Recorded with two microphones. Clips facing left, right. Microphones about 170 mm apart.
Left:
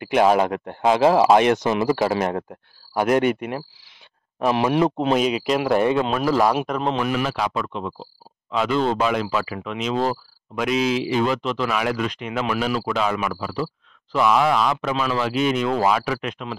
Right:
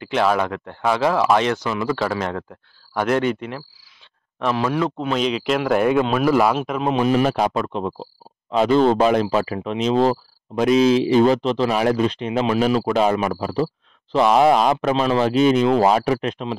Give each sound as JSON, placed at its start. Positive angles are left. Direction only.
{"t": 0.5, "sound": "speech", "side_deg": 20}
{"t": 2.9, "sound": "speech", "side_deg": 10}
{"t": 5.2, "sound": "a man's voice", "side_deg": 5}
{"t": 7.0, "sound": "speech", "side_deg": -30}
{"t": 7.2, "sound": "speech", "side_deg": -45}
{"t": 15.0, "sound": "speech", "side_deg": -35}